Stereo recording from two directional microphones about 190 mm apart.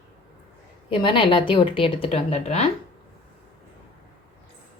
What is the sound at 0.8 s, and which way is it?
A woman's voice, 25° left (ahead or behind).